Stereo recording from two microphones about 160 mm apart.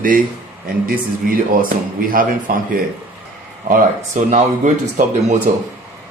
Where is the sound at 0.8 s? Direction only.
60° right (ahead or behind).